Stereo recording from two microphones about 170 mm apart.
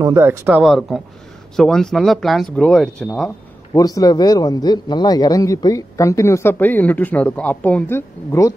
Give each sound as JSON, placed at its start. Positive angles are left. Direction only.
{"t": 0.0, "sound": "speech", "side_deg": -15}
{"t": 0.6, "sound": "speech", "side_deg": 0}
{"t": 3.7, "sound": "speech", "side_deg": 20}